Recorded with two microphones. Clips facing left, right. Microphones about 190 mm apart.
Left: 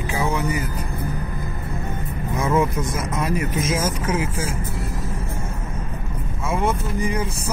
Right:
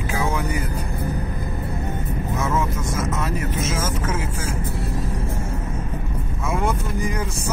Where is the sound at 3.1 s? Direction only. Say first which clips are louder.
Left 2 dB; 10° left (ahead or behind).